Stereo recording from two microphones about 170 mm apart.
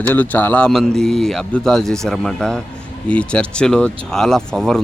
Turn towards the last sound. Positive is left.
turn(degrees=0)  # may be behind; listen again after turning